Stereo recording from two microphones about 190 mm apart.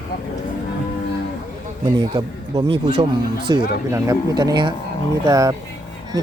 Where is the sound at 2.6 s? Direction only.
30° right (ahead or behind).